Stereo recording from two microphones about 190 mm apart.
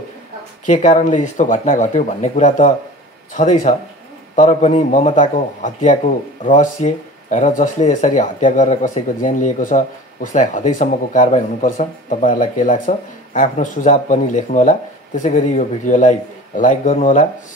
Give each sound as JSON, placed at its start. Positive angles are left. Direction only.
{"t": 0.7, "sound": "speech", "side_deg": 40}